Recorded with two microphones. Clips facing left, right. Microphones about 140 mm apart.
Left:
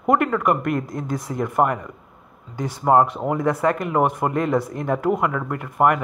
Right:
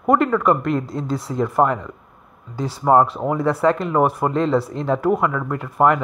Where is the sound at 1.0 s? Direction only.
15° left (ahead or behind).